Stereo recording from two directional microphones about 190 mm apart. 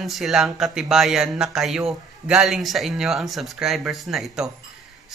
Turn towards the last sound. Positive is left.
turn(degrees=0)  # may be behind; listen again after turning